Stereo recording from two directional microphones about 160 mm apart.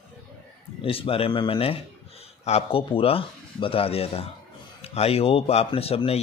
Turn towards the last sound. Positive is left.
turn(degrees=40)  # may be behind; listen again after turning